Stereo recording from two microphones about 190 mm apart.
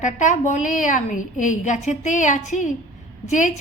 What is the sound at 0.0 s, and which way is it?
A woman's voice, 40° left (ahead or behind).